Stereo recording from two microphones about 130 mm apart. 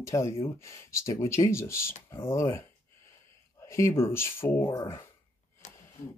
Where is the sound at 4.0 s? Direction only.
20° left (ahead or behind).